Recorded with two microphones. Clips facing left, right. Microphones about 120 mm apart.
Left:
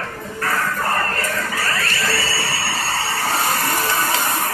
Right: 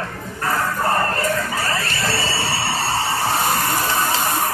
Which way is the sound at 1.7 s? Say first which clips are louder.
Even; 25° right (ahead or behind).